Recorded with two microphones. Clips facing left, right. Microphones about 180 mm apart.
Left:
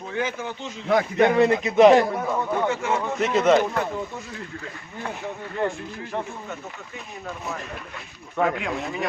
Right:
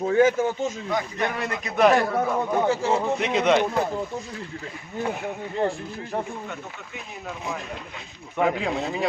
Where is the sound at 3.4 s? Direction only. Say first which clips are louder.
Left 2 dB; 5° left (ahead or behind).